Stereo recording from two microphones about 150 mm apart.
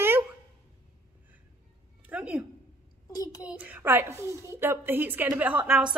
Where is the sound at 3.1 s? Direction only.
25° left (ahead or behind).